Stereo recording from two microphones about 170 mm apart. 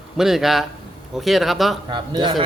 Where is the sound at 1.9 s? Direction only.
25° right (ahead or behind).